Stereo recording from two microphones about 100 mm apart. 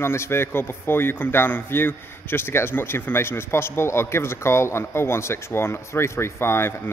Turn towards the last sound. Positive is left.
turn(degrees=25)  # may be behind; listen again after turning